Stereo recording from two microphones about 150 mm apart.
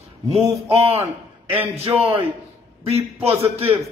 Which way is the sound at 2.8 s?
40° right (ahead or behind).